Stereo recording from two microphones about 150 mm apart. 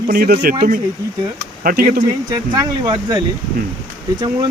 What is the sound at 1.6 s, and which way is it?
Speech, 80° right.